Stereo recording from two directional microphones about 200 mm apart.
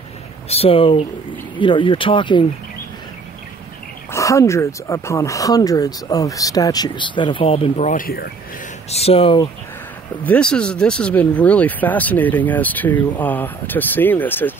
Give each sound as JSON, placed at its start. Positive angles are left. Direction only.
{"t": 0.5, "sound": "speech", "side_deg": 30}
{"t": 4.1, "sound": "speech", "side_deg": 15}
{"t": 8.9, "sound": "speech", "side_deg": 30}
{"t": 10.2, "sound": "speech", "side_deg": 5}